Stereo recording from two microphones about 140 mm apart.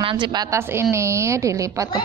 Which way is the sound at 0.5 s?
20° right (ahead or behind).